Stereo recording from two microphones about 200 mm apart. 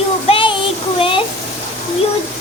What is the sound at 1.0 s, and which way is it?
Speech, 25° left (ahead or behind).